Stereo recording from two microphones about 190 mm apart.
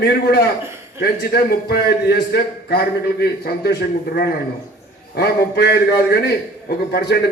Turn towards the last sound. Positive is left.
turn(degrees=60)  # may be behind; listen again after turning